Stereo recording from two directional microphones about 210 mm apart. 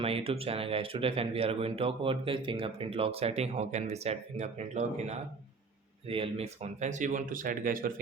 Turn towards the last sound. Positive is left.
turn(degrees=-40)  # may be behind; listen again after turning